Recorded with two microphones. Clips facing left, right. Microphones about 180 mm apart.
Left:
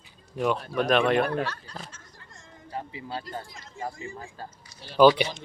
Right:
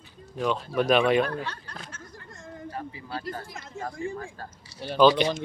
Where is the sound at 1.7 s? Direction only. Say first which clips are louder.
Even; 55° right (ahead or behind).